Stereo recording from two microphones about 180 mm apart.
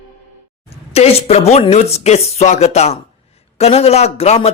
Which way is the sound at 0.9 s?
35° left (ahead or behind).